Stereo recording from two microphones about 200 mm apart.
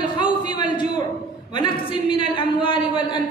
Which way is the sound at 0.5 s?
25° left (ahead or behind).